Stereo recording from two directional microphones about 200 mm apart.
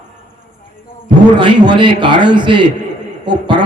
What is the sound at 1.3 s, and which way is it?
A man's voice, 25° right (ahead or behind).